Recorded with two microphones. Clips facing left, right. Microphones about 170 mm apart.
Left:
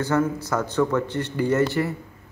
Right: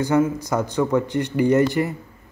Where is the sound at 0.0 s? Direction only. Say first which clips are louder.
Right 3 dB; 15° right (ahead or behind).